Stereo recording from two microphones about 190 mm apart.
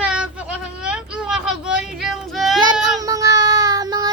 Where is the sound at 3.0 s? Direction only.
20° right (ahead or behind).